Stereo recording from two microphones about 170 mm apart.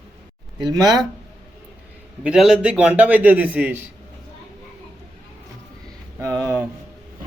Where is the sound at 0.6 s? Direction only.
25° right (ahead or behind).